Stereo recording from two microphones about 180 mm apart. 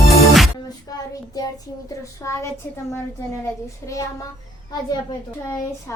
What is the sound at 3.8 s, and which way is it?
Speech, 15° left (ahead or behind).